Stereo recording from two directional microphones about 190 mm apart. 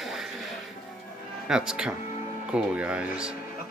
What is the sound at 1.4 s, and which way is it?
Speech, 5° right (ahead or behind).